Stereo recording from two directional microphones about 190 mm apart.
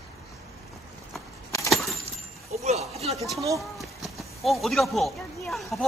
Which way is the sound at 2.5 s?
35° right (ahead or behind).